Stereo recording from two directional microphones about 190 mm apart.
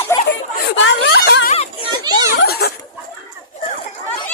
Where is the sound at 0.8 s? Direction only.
75° left (ahead or behind).